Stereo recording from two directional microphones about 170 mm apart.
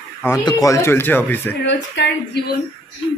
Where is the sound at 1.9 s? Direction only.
90° left.